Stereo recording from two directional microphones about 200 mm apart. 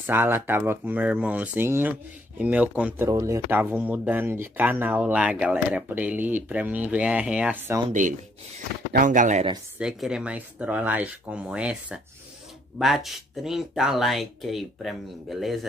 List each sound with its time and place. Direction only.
0.0 s speech: 10° right (ahead or behind)
8.9 s speech: 40° right (ahead or behind)
9.8 s speech: 5° right (ahead or behind)